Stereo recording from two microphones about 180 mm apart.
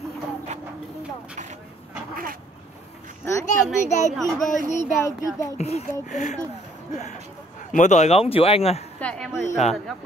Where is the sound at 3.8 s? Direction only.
40° left (ahead or behind).